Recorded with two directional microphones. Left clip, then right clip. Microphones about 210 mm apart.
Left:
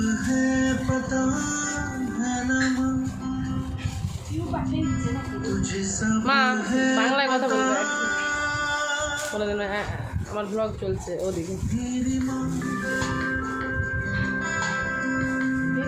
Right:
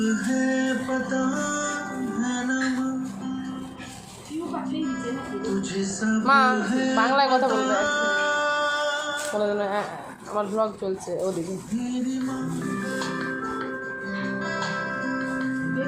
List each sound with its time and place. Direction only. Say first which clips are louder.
0.0 s music: even; 15° right (ahead or behind)
5.8 s music: even; 10° right (ahead or behind)
6.2 s speech: right 3 dB; 5° left (ahead or behind)
6.7 s music: left 2 dB; 10° right (ahead or behind)
6.9 s speech: right 4 dB; 5° left (ahead or behind)
7.4 s music: right 1 dB; 10° right (ahead or behind)
9.4 s speech: right 4 dB; 5° left (ahead or behind)
14.3 s music: even; 10° right (ahead or behind)